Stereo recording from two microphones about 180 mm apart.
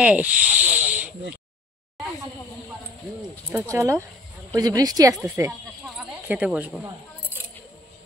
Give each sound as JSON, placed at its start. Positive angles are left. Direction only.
{"t": 0.0, "sound": "snake", "side_deg": -5}
{"t": 3.5, "sound": "a woman's voice", "side_deg": -15}
{"t": 5.1, "sound": "speech", "side_deg": 0}